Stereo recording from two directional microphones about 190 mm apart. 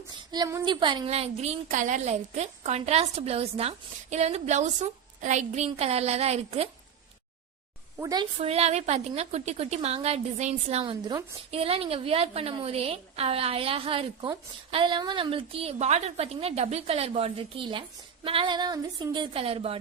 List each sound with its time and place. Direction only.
0.3 s a woman's voice: 20° right (ahead or behind)
7.9 s a woman's voice: 20° right (ahead or behind)
8.4 s a woman's voice: 35° right (ahead or behind)